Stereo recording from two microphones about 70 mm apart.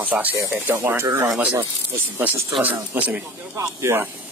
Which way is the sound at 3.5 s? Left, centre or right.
Right.